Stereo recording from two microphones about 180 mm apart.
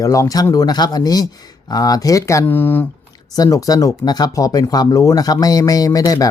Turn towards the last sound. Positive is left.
turn(degrees=20)  # may be behind; listen again after turning